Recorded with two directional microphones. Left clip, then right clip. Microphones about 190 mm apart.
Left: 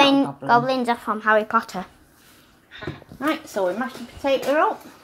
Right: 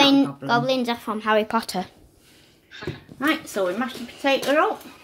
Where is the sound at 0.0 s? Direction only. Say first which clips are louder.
Left 1 dB; 5° right (ahead or behind); by 1.9 s 25° right (ahead or behind).